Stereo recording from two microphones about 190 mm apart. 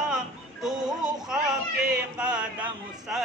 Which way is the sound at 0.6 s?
5° right (ahead or behind).